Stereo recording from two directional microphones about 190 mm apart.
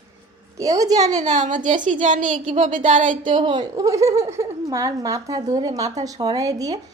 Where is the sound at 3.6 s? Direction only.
20° right (ahead or behind).